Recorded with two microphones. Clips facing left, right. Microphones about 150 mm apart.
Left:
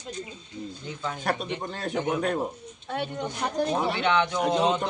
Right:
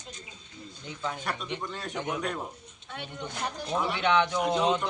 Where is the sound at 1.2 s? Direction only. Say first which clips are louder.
Left 5 dB; 45° left (ahead or behind).